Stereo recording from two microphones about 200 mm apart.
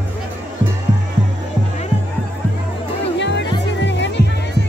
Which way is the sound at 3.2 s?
60° left (ahead or behind).